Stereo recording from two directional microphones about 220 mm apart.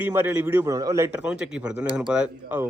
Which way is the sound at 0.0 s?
10° right (ahead or behind).